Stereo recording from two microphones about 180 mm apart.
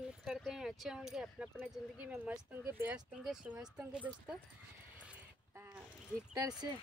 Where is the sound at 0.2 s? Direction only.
Centre (ahead or behind).